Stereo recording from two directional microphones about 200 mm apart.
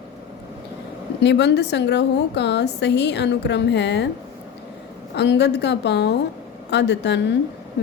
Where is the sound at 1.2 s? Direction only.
60° left (ahead or behind).